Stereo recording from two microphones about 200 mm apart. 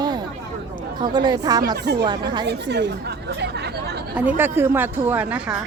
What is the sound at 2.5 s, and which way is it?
Speech, 60° right (ahead or behind).